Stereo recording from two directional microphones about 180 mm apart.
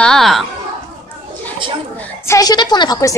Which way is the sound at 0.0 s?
Centre (ahead or behind).